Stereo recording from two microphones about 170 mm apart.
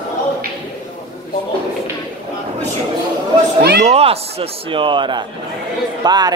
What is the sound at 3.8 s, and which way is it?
Speech, 35° right (ahead or behind).